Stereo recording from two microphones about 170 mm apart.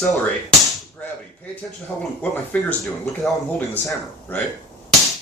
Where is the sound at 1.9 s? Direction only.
10° left (ahead or behind).